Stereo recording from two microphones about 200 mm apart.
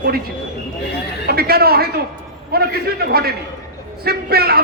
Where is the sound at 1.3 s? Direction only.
50° right (ahead or behind).